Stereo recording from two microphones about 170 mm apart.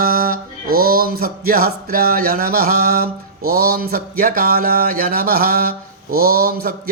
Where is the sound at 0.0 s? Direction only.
60° right (ahead or behind).